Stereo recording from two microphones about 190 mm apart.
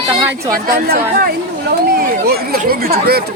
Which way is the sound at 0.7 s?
55° right (ahead or behind).